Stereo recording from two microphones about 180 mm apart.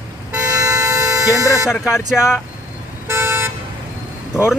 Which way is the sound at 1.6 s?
5° right (ahead or behind).